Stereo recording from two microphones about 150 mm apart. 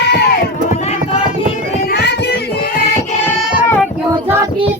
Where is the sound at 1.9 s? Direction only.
90° left.